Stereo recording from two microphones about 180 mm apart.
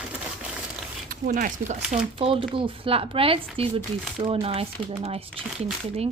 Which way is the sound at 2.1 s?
30° right (ahead or behind).